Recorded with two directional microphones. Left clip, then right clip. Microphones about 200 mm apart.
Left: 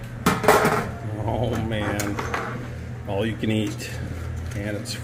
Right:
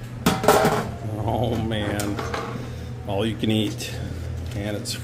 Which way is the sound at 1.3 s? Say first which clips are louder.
Right 1 dB; 15° right (ahead or behind).